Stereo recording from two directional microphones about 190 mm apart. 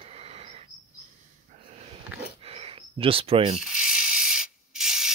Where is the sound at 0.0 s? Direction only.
30° right (ahead or behind).